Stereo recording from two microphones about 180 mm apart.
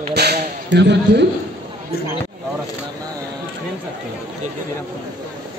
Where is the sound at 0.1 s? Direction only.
65° right (ahead or behind).